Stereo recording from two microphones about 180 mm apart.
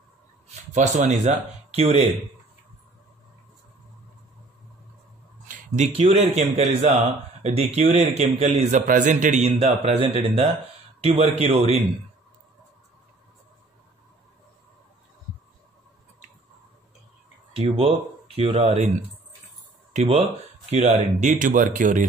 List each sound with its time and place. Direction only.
0.7 s a man's voice: 40° right (ahead or behind)
5.5 s a man's voice: 35° right (ahead or behind)
17.6 s a man's voice: 30° right (ahead or behind)
19.9 s speech: 40° right (ahead or behind)